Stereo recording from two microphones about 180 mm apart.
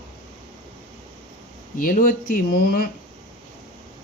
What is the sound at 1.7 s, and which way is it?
Speech, 50° left (ahead or behind).